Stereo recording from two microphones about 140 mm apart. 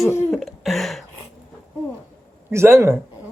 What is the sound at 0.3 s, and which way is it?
Cough, centre (ahead or behind).